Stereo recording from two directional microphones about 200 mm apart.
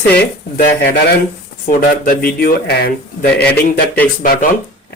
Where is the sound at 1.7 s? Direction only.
45° left (ahead or behind).